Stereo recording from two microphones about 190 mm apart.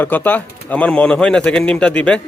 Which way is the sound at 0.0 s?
10° left (ahead or behind).